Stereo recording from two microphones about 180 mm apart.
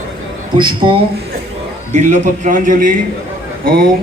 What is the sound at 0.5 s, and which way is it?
Speech, 25° right (ahead or behind).